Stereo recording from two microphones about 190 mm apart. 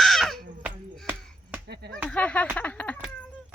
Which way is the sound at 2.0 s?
5° left (ahead or behind).